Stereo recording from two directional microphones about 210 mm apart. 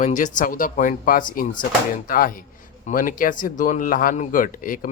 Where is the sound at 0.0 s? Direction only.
35° left (ahead or behind).